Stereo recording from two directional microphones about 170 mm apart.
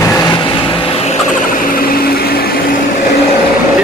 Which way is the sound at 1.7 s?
60° left (ahead or behind).